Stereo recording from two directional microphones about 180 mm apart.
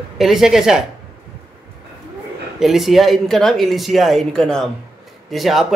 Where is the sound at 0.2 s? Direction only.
Centre (ahead or behind).